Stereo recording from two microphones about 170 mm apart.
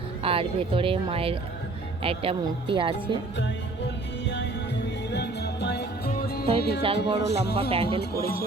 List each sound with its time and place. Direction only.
0.2 s speech: 35° right (ahead or behind)
5.1 s music: 80° left; by 6.4 s 65° left (ahead or behind)
6.6 s speech: 70° left (ahead or behind)
6.8 s speech: 30° right (ahead or behind)
7.3 s speech: 70° left (ahead or behind)
7.7 s speech: 30° right (ahead or behind)
8.1 s music: 60° left (ahead or behind)